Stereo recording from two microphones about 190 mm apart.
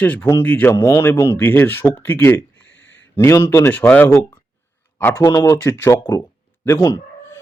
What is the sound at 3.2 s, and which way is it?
A man's voice, 15° left (ahead or behind).